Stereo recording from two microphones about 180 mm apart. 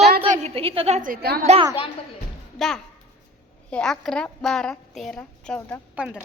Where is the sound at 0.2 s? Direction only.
30° right (ahead or behind); by 1.5 s 55° right (ahead or behind).